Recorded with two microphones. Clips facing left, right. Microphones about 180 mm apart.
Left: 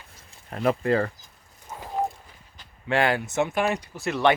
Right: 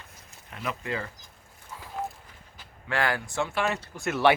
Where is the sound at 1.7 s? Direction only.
45° left (ahead or behind).